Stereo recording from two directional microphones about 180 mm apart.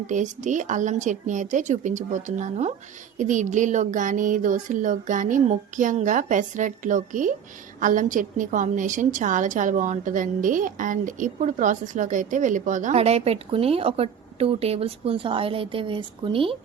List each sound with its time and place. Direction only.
0.1 s a woman's voice: 45° right (ahead or behind)